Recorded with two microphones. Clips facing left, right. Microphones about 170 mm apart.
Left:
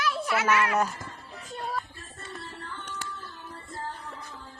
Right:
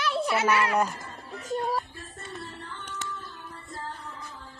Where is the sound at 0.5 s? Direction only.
35° right (ahead or behind).